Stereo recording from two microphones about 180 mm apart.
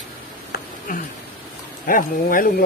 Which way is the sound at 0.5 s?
50° left (ahead or behind).